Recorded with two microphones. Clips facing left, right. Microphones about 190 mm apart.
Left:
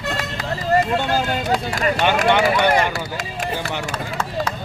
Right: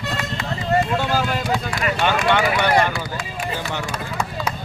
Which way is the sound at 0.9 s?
35° left (ahead or behind).